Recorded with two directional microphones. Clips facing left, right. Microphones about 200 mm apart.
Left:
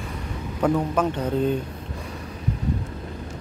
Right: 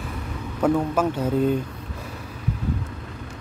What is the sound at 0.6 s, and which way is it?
Speech, 5° right (ahead or behind).